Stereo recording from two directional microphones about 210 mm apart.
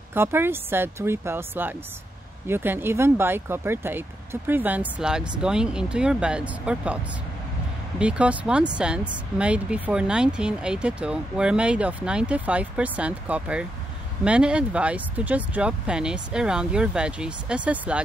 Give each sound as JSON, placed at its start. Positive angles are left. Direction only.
{"t": 0.1, "sound": "speech", "side_deg": -10}
{"t": 8.0, "sound": "speech", "side_deg": -5}